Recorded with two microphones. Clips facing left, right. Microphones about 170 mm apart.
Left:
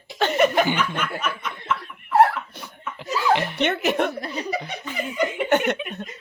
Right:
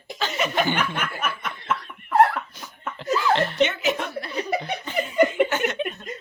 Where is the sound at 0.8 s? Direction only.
50° right (ahead or behind).